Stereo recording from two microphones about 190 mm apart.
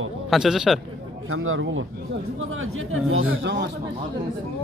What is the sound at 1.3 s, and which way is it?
A man's voice, 90° right.